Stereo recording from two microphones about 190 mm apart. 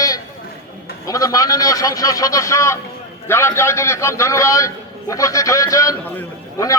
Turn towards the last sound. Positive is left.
turn(degrees=15)  # may be behind; listen again after turning